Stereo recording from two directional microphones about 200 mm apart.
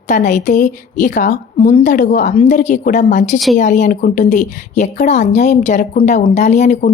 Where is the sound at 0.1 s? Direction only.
35° left (ahead or behind).